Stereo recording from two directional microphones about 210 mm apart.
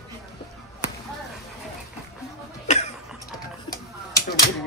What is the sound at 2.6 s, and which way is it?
Cough, 30° left (ahead or behind).